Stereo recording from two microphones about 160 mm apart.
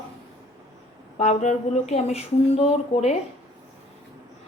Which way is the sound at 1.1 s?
45° left (ahead or behind).